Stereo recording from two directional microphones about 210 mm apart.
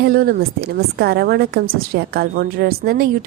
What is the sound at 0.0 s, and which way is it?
A woman's voice, 45° right (ahead or behind).